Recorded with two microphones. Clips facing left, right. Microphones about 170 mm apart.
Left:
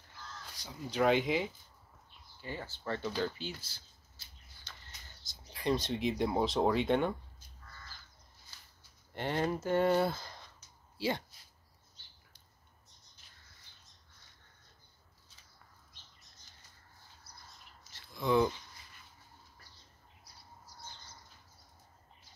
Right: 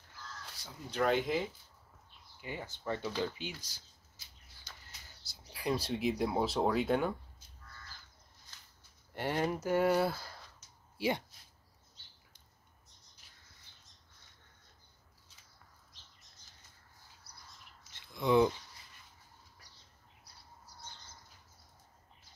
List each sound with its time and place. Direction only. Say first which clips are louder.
0.6 s speech: left 2 dB; centre (ahead or behind)
2.4 s speech: right 1 dB; 15° right (ahead or behind)
4.8 s speech: left 1 dB; 10° right (ahead or behind)
9.1 s speech: even; 10° right (ahead or behind)
11.0 s speech: right 1 dB; 20° right (ahead or behind)
17.3 s bird: left 2 dB; 65° right (ahead or behind)
18.1 s speech: right 2 dB; 20° right (ahead or behind)